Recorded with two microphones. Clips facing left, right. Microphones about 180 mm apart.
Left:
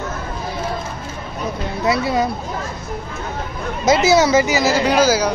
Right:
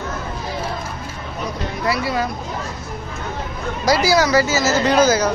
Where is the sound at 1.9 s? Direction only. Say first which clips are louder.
Left 3 dB; 25° left (ahead or behind).